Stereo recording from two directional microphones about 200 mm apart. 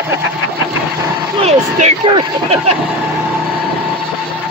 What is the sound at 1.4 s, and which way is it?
Speech, 30° right (ahead or behind).